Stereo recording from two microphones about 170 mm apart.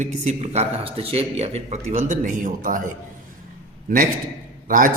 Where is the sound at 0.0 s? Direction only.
40° right (ahead or behind).